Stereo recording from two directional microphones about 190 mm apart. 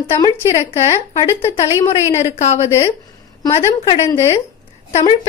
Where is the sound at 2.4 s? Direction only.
35° left (ahead or behind).